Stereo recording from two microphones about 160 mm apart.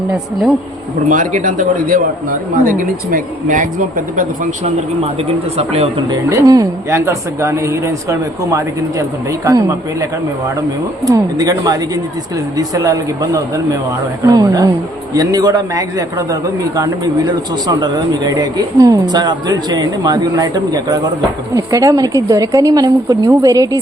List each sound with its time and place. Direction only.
1.0 s speech: 55° right (ahead or behind)
5.5 s speech: 40° right (ahead or behind)
6.1 s a man's voice: 20° right (ahead or behind)